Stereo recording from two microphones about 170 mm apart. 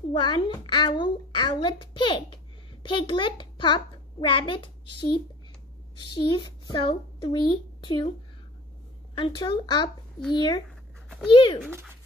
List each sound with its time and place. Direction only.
0.2 s a child's voice: 30° left (ahead or behind)
9.1 s a child's voice: 30° left (ahead or behind)
11.6 s speech: 5° right (ahead or behind)